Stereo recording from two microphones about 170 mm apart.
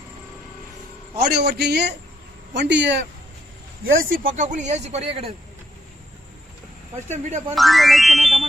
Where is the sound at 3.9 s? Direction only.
55° right (ahead or behind); by 5.3 s 40° right (ahead or behind).